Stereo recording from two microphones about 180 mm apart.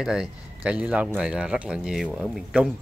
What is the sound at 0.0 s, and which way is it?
Speech, 5° right (ahead or behind).